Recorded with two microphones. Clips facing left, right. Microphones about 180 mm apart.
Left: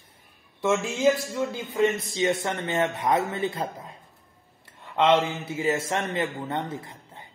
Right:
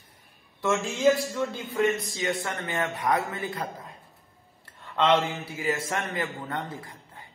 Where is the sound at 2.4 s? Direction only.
25° left (ahead or behind).